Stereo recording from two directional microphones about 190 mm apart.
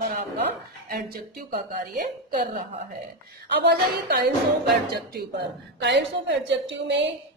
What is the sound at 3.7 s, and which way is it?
Speech, 55° right (ahead or behind).